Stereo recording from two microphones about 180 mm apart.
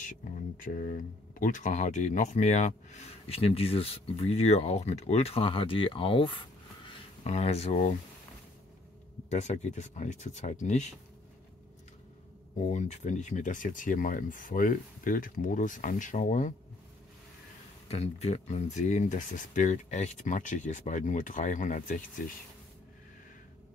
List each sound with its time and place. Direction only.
0.7 s speech: 50° left (ahead or behind)
9.3 s speech: 40° left (ahead or behind)
12.5 s speech: 40° left (ahead or behind)
17.8 s speech: 35° left (ahead or behind)